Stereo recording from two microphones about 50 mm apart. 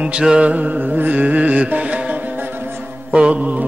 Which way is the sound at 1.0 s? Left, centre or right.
Right.